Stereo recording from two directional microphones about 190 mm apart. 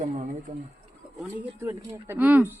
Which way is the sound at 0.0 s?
40° right (ahead or behind).